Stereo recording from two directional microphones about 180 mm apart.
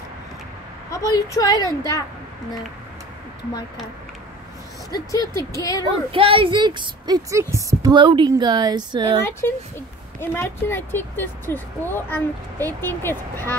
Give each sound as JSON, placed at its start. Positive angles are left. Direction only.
{"t": 0.9, "sound": "a woman's voice", "side_deg": 20}
{"t": 4.9, "sound": "a woman's voice", "side_deg": 20}
{"t": 5.9, "sound": "speech", "side_deg": -30}
{"t": 9.2, "sound": "speech", "side_deg": 15}